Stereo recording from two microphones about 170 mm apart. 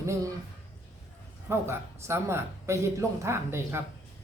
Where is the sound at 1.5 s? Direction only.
15° right (ahead or behind).